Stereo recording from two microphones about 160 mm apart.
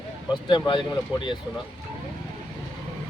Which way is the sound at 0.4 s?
30° left (ahead or behind).